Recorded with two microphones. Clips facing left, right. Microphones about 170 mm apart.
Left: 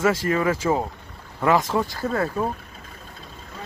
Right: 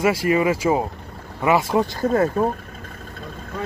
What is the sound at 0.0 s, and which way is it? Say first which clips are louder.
Speech: right 2 dB; 10° right (ahead or behind).